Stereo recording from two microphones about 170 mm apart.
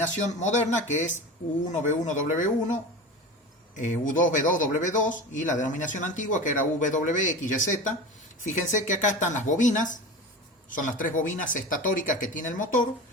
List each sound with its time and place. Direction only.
0.0 s a man's voice: 45° left (ahead or behind)
3.8 s a man's voice: 50° left (ahead or behind)